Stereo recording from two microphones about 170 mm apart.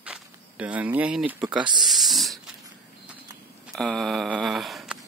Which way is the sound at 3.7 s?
Centre (ahead or behind).